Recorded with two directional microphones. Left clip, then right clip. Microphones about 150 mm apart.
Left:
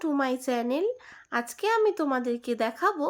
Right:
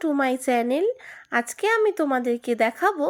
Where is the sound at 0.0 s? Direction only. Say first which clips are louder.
Right 5 dB; 20° right (ahead or behind).